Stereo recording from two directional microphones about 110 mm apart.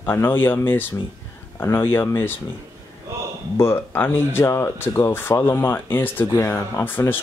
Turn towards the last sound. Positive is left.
turn(degrees=20)  # may be behind; listen again after turning